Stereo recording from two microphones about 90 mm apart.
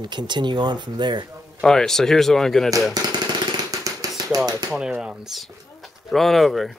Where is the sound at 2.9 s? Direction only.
50° right (ahead or behind).